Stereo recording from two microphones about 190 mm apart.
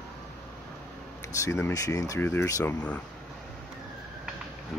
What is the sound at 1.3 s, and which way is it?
Speech, 15° left (ahead or behind).